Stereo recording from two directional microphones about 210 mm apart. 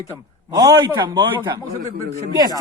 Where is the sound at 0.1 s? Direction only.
10° right (ahead or behind).